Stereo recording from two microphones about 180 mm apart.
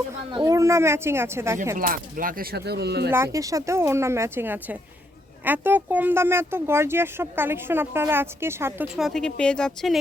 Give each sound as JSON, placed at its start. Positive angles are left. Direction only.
{"t": 0.3, "sound": "speech", "side_deg": -25}
{"t": 1.9, "sound": "speech", "side_deg": -50}
{"t": 3.3, "sound": "speech", "side_deg": -20}
{"t": 9.0, "sound": "speech", "side_deg": 0}